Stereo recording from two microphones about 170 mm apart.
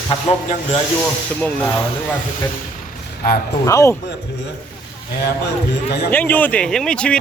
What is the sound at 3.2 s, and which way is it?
Speech, 55° left (ahead or behind).